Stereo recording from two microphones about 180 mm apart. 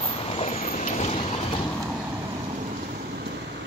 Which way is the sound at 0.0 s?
35° left (ahead or behind).